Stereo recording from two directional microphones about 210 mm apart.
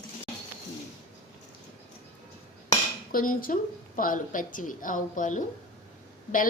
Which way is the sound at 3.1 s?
40° left (ahead or behind).